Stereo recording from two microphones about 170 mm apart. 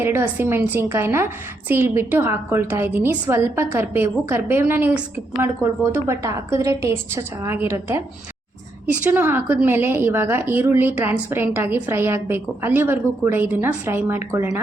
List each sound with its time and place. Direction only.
0.0 s a woman's voice: 15° right (ahead or behind)